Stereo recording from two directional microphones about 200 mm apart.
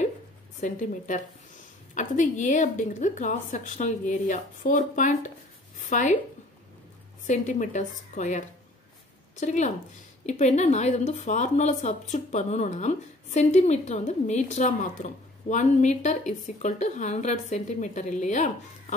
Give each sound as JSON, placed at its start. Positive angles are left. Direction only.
{"t": 0.6, "sound": "speech", "side_deg": 40}
{"t": 7.2, "sound": "speech", "side_deg": 40}